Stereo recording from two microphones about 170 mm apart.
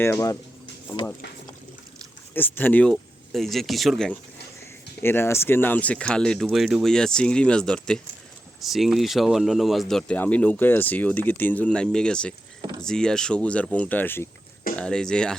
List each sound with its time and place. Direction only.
0.0 s speech: 15° left (ahead or behind)
2.3 s speech: 10° left (ahead or behind)
5.0 s speech: 15° left (ahead or behind)